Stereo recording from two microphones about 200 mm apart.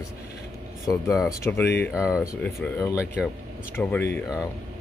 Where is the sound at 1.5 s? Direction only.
10° left (ahead or behind).